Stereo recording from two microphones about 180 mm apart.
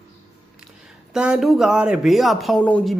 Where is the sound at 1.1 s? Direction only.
5° right (ahead or behind).